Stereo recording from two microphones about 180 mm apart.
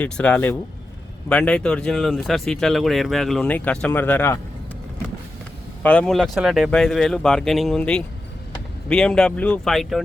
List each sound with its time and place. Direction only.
0.0 s speech: 5° left (ahead or behind)
5.8 s speech: 5° left (ahead or behind)